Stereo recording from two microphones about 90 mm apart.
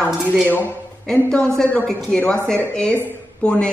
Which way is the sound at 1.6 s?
15° left (ahead or behind).